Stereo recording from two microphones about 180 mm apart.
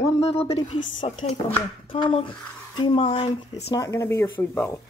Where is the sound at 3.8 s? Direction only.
15° left (ahead or behind).